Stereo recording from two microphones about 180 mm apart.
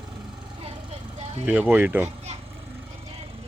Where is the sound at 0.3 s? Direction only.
25° right (ahead or behind).